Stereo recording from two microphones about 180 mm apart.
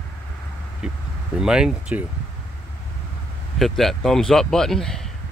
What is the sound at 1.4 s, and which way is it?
Speech, 5° right (ahead or behind).